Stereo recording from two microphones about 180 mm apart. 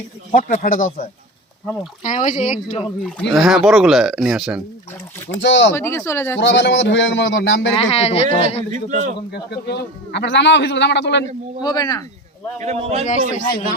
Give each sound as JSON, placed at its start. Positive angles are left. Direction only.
{"t": 0.3, "sound": "speech", "side_deg": 45}
{"t": 2.0, "sound": "speech", "side_deg": 45}
{"t": 3.3, "sound": "speech", "side_deg": 0}
{"t": 5.4, "sound": "a man's voice", "side_deg": 90}
{"t": 5.7, "sound": "speech", "side_deg": 15}
{"t": 6.4, "sound": "a man's voice", "side_deg": 80}
{"t": 7.8, "sound": "speech", "side_deg": 35}
{"t": 8.7, "sound": "a man's voice", "side_deg": -45}
{"t": 9.3, "sound": "a man's voice", "side_deg": 65}
{"t": 11.6, "sound": "speech", "side_deg": 20}
{"t": 12.5, "sound": "a man's voice", "side_deg": -35}
{"t": 13.3, "sound": "speech", "side_deg": 50}